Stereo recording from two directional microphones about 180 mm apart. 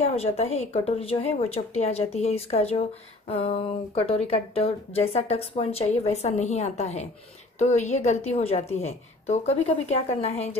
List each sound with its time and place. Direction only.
0.0 s speech: 35° left (ahead or behind)